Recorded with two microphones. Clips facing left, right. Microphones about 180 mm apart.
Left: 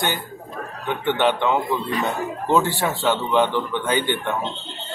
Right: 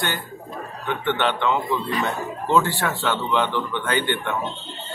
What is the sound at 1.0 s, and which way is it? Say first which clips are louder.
Speech: left 3 dB; 10° left (ahead or behind).